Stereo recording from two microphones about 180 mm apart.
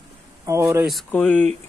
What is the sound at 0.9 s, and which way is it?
Speech, 5° left (ahead or behind).